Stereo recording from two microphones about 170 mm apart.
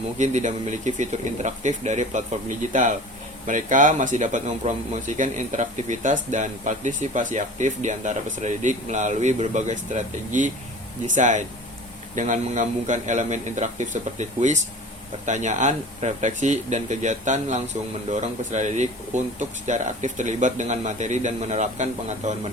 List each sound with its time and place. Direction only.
0.2 s speech: 45° right (ahead or behind)
3.4 s speech: 50° right (ahead or behind)